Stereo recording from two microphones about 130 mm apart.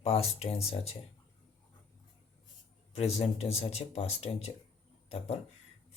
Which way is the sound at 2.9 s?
55° left (ahead or behind).